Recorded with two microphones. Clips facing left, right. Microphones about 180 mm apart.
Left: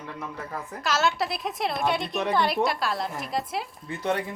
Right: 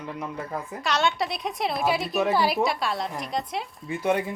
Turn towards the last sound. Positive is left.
turn(degrees=-15)  # may be behind; listen again after turning